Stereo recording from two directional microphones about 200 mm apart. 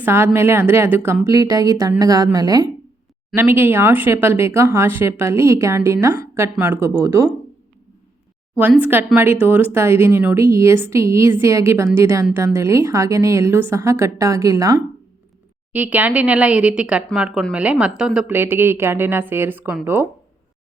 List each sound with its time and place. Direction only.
0.0 s a woman's voice: 15° right (ahead or behind)
8.5 s speech: 10° right (ahead or behind)